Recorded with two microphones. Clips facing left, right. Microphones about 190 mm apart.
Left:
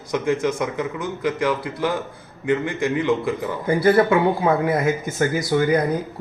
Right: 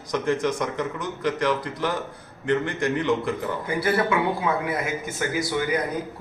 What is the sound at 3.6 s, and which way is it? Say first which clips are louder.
Speech: left 8 dB; 40° left (ahead or behind).